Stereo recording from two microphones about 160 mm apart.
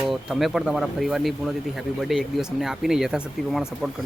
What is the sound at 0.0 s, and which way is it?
Speech, 5° right (ahead or behind).